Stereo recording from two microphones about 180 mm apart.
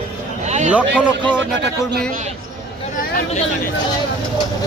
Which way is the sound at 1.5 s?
70° right (ahead or behind).